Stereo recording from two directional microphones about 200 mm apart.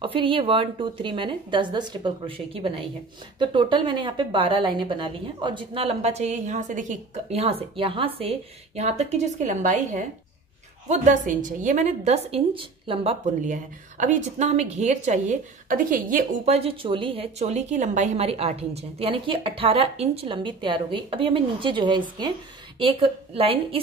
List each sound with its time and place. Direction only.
0.0 s a woman's voice: 25° right (ahead or behind)